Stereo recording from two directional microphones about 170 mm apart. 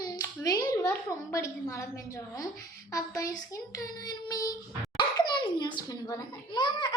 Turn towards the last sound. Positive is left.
turn(degrees=25)  # may be behind; listen again after turning